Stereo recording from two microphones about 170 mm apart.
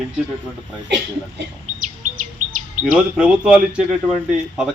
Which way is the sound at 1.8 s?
50° right (ahead or behind).